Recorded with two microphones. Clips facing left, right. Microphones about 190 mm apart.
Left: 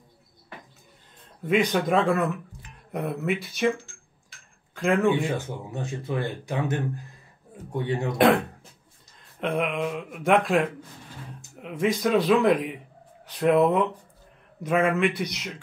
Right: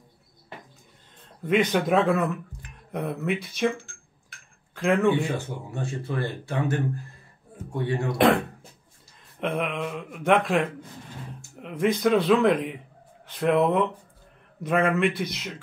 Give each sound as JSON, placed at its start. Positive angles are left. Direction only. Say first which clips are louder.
{"t": 1.4, "sound": "speech", "louder": "even", "side_deg": 0}
{"t": 4.7, "sound": "speech", "louder": "even", "side_deg": 0}
{"t": 5.7, "sound": "speech", "louder": "left 1 dB", "side_deg": 20}
{"t": 8.2, "sound": "speech", "louder": "left 1 dB", "side_deg": 0}